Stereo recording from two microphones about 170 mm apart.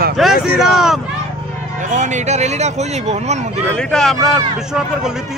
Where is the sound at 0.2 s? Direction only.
Centre (ahead or behind).